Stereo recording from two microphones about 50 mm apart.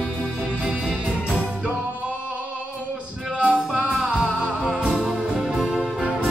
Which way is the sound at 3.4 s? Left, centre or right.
Right.